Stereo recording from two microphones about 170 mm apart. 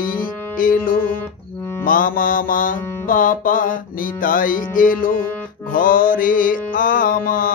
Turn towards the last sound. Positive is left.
turn(degrees=55)  # may be behind; listen again after turning